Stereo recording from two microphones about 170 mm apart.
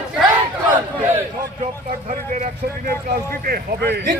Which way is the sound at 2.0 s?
50° right (ahead or behind).